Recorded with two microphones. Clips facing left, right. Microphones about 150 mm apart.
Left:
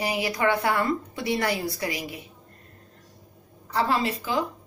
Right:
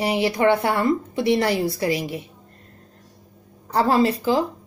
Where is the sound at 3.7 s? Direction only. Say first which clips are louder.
Right 6 dB; 40° right (ahead or behind).